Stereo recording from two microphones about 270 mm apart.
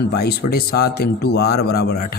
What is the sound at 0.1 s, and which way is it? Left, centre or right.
A man's voice, left.